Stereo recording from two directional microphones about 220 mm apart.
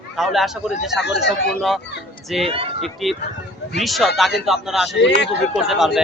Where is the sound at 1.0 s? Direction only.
50° left (ahead or behind).